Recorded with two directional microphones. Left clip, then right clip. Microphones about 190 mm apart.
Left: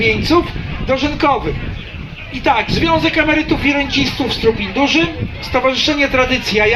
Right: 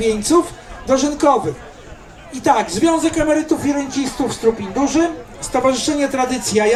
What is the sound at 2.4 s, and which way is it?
A man's voice, 20° left (ahead or behind).